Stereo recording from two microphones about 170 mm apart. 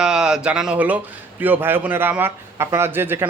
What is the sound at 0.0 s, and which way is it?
A man's voice, 5° right (ahead or behind).